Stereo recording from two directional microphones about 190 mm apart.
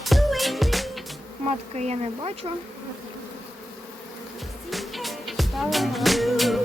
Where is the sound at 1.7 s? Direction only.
35° right (ahead or behind).